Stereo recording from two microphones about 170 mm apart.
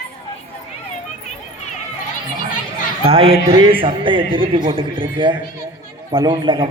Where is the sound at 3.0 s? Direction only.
35° right (ahead or behind).